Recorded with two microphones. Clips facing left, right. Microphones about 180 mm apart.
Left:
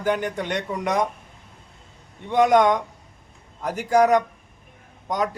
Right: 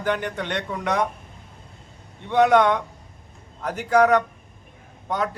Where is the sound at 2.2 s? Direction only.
10° left (ahead or behind).